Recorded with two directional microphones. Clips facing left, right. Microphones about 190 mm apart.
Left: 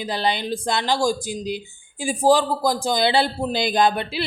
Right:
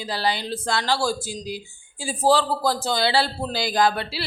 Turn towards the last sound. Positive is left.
turn(degrees=20)  # may be behind; listen again after turning